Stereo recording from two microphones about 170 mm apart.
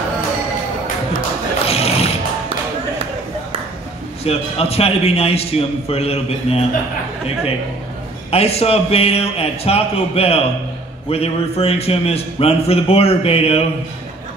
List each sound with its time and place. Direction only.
1.7 s music: 35° left (ahead or behind)
4.2 s a man's voice: 35° left (ahead or behind)
8.3 s a man's voice: 35° left (ahead or behind)